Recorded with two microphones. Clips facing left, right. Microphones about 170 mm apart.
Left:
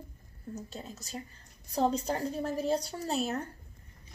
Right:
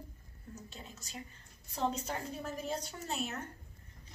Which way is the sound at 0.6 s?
40° left (ahead or behind).